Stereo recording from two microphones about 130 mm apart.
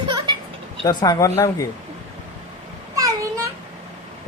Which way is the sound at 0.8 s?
30° left (ahead or behind).